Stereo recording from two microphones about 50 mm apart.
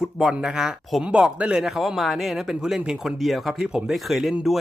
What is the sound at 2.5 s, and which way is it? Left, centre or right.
Speech, centre.